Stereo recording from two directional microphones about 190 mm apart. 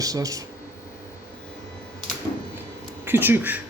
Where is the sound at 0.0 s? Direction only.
20° right (ahead or behind).